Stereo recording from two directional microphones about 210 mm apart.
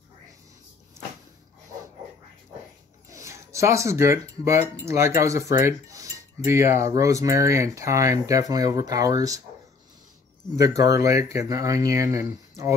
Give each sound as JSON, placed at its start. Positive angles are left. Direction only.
{"t": 3.1, "sound": "speech", "side_deg": -15}
{"t": 4.8, "sound": "cutlery", "side_deg": -15}
{"t": 10.5, "sound": "cutlery", "side_deg": -15}